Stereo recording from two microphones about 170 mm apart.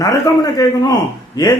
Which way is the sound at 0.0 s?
20° left (ahead or behind).